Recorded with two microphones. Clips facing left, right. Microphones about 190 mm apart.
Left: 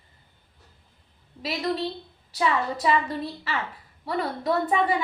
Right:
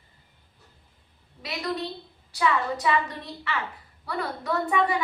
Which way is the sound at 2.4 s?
30° left (ahead or behind).